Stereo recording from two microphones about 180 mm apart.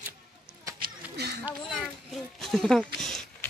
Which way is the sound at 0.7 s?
65° right (ahead or behind).